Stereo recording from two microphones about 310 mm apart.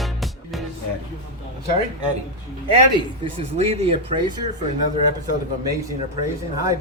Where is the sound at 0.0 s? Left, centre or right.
Centre.